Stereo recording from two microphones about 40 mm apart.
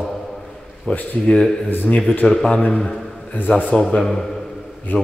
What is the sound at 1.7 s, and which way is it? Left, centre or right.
Speech, left.